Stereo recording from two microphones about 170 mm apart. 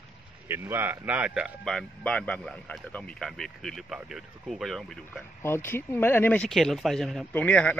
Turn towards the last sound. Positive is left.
turn(degrees=5)  # may be behind; listen again after turning